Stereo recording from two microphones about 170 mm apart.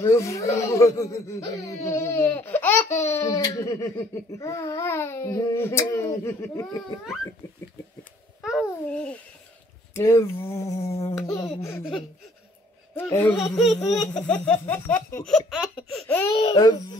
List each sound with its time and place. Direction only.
0.0 s speech: 15° left (ahead or behind)
8.4 s babbling: 5° right (ahead or behind)
8.8 s speech: 5° left (ahead or behind)
11.1 s a sound: 5° left (ahead or behind)
12.9 s speech: 15° left (ahead or behind)
15.2 s a sound: centre (ahead or behind)
16.3 s speech: 30° left (ahead or behind)